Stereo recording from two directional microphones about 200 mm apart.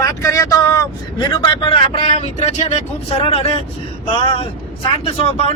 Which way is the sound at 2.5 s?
35° left (ahead or behind).